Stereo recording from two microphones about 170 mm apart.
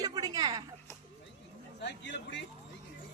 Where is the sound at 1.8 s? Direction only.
90° left.